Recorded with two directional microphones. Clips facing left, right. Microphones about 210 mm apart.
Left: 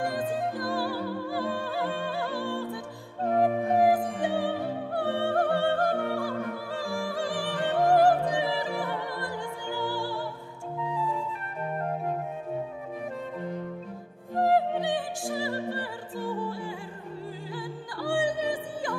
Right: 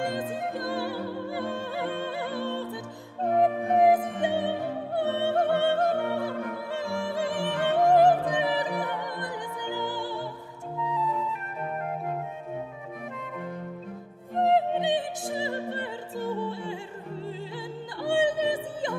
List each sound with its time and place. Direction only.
0.0 s music: 25° right (ahead or behind)
3.3 s opera: 20° right (ahead or behind)
7.8 s music: 20° right (ahead or behind)
14.3 s opera: 20° right (ahead or behind)
17.6 s music: 25° right (ahead or behind)